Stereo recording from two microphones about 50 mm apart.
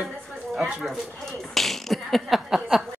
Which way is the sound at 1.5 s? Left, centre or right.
Centre.